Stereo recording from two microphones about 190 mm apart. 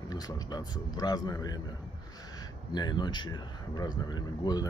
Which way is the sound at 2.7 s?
20° left (ahead or behind).